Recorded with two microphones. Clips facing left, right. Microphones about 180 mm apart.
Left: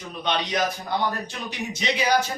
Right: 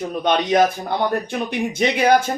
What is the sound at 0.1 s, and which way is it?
Speech, 50° right (ahead or behind).